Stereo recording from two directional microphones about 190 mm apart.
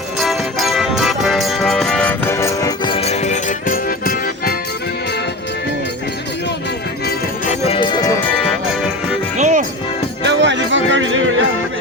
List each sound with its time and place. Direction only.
0.2 s music: centre (ahead or behind); by 4.5 s 50° left (ahead or behind)
7.7 s music: 25° left (ahead or behind)
9.4 s music: 40° right (ahead or behind)
10.2 s music: 70° right (ahead or behind); by 11.3 s 90° right